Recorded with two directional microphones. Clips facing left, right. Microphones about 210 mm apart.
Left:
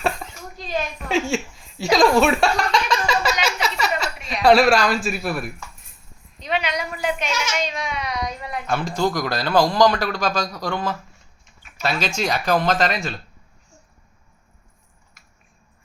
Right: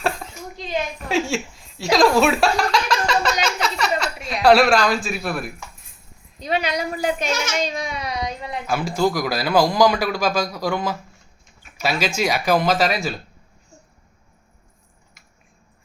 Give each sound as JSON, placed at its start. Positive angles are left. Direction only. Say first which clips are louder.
{"t": 0.0, "sound": "a sound", "louder": "even", "side_deg": 0}
{"t": 1.0, "sound": "speech", "louder": "left 1 dB", "side_deg": 0}
{"t": 3.4, "sound": "a sound", "louder": "right 1 dB", "side_deg": 5}
{"t": 5.0, "sound": "speech", "louder": "left 1 dB", "side_deg": 0}
{"t": 6.4, "sound": "speech", "louder": "right 2 dB", "side_deg": -35}
{"t": 8.6, "sound": "speech", "louder": "right 2 dB", "side_deg": -5}